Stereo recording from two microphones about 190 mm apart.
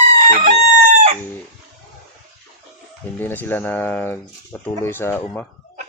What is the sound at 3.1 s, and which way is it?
Speech, 10° left (ahead or behind).